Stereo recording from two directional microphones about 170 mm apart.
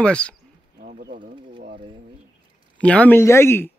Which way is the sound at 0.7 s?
50° right (ahead or behind).